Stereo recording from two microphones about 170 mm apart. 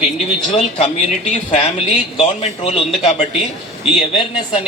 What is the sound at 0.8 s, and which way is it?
A man's voice, 40° left (ahead or behind).